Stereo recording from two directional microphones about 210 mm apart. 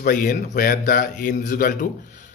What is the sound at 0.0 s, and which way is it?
Speech, 40° left (ahead or behind).